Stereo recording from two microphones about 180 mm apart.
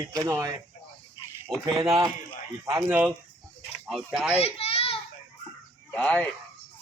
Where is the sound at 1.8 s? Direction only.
20° right (ahead or behind); by 4.4 s 5° right (ahead or behind).